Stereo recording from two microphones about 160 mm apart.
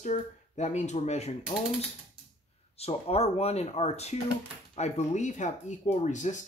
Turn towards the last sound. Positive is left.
turn(degrees=50)  # may be behind; listen again after turning